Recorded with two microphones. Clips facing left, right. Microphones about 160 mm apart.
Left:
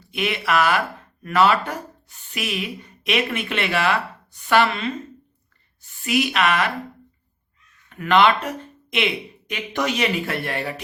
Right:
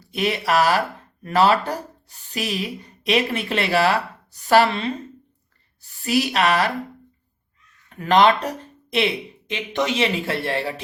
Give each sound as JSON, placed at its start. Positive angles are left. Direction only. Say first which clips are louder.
{"t": 0.1, "sound": "speech", "louder": "right 2 dB", "side_deg": -35}
{"t": 7.9, "sound": "speech", "louder": "right 1 dB", "side_deg": -35}